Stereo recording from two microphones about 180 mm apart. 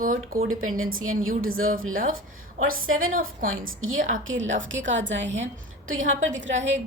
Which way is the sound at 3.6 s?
90° right.